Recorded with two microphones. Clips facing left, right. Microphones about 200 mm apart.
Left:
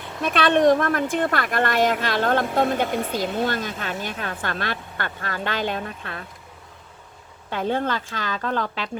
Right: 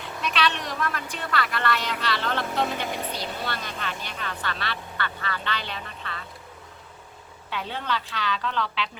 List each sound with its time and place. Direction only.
0.2 s a woman's voice: 50° left (ahead or behind)
7.5 s a woman's voice: 50° left (ahead or behind)